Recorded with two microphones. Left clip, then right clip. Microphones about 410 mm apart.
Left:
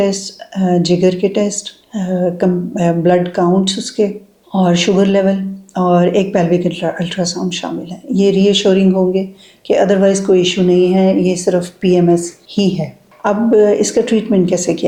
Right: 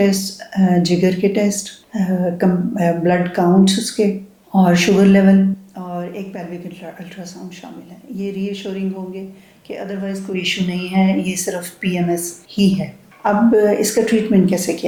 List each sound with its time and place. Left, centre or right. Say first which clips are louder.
0.0 s speech: left 2 dB; left